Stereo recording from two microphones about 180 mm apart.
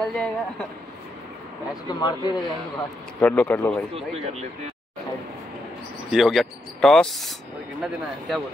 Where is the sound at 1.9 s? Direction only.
25° left (ahead or behind).